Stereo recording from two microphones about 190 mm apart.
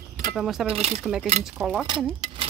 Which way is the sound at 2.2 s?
25° right (ahead or behind).